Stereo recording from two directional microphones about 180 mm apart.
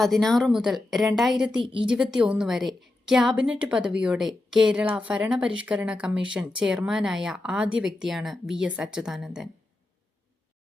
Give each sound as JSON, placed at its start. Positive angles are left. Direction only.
{"t": 0.0, "sound": "speech", "side_deg": 0}
{"t": 1.6, "sound": "a woman's voice", "side_deg": -25}
{"t": 1.9, "sound": "speech", "side_deg": -5}